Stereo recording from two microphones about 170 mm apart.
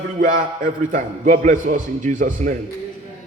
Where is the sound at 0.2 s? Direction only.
50° right (ahead or behind).